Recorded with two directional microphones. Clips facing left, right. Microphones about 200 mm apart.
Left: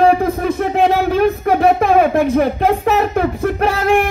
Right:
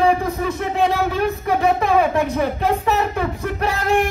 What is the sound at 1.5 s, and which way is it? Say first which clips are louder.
Speech: left 3 dB; 55° left (ahead or behind).